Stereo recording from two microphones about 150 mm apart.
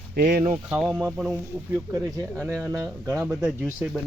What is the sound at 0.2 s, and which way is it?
Speech, 70° right (ahead or behind).